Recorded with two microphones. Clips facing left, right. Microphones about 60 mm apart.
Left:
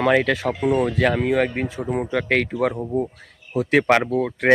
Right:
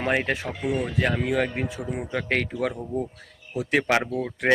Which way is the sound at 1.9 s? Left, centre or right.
Left.